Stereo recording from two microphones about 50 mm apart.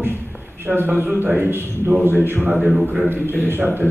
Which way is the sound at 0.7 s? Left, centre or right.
Right.